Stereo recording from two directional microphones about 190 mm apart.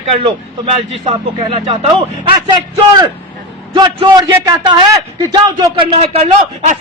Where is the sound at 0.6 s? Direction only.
30° right (ahead or behind).